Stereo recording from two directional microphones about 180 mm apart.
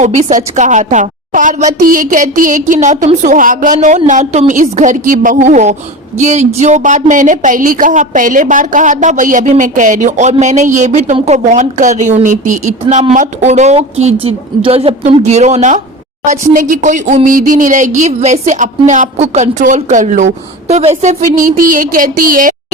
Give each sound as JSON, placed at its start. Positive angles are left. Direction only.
{"t": 0.0, "sound": "a woman's voice", "side_deg": -40}